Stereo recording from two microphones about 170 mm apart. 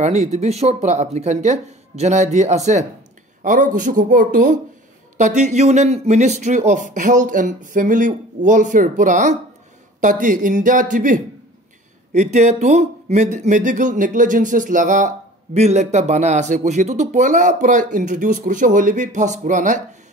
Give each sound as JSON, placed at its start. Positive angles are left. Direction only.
{"t": 0.0, "sound": "speech", "side_deg": -40}